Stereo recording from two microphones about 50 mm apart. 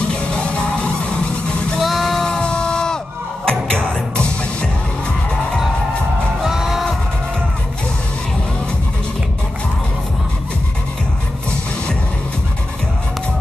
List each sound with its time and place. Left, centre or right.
0.1 s music: left
1.8 s a sound: centre
3.4 s music: centre
6.4 s music: centre